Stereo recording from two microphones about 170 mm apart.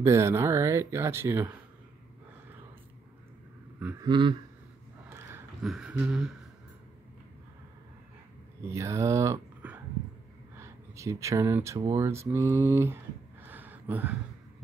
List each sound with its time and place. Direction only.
0.0 s speech: 15° right (ahead or behind)
4.0 s a man's voice: 30° right (ahead or behind)
5.6 s speech: 5° right (ahead or behind)
8.6 s speech: 15° right (ahead or behind)